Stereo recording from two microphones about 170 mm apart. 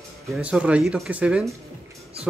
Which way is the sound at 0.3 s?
5° right (ahead or behind).